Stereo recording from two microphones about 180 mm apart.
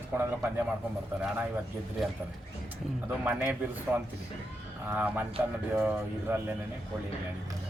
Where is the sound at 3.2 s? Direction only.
10° right (ahead or behind).